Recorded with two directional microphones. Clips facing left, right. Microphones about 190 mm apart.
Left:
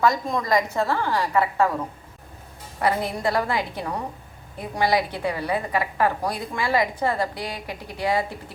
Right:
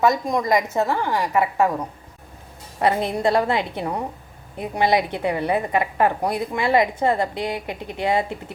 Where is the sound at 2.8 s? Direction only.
25° right (ahead or behind).